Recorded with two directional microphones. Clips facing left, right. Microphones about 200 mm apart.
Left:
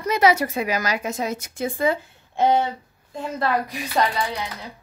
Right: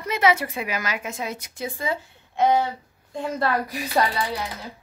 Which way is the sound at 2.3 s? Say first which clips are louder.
Left 1 dB; 25° left (ahead or behind).